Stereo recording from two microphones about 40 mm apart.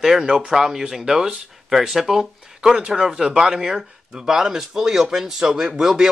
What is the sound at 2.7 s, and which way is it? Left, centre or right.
Speech, centre.